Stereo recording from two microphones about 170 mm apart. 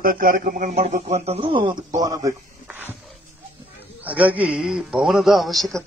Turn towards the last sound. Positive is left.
turn(degrees=0)  # may be behind; listen again after turning